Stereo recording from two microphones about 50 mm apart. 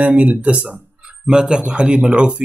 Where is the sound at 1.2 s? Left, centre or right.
Centre.